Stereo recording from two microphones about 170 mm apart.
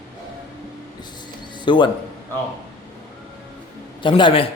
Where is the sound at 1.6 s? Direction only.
30° left (ahead or behind).